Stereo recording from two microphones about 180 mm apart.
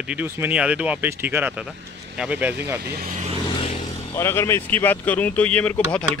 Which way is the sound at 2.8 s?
55° right (ahead or behind).